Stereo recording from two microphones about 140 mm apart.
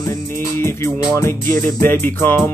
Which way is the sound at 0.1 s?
20° left (ahead or behind).